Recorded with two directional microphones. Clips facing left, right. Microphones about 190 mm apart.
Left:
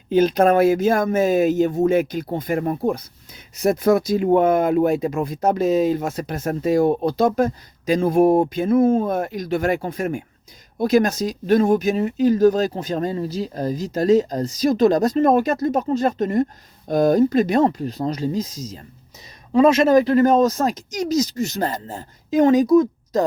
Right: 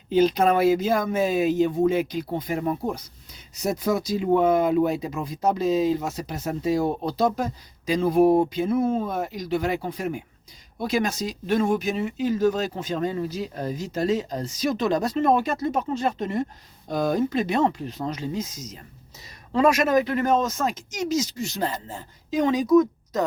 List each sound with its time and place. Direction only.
0.1 s speech: 50° left (ahead or behind)
22.7 s speech: 30° left (ahead or behind)